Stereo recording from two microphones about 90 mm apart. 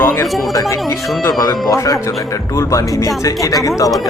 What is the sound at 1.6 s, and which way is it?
Speech, 40° left (ahead or behind).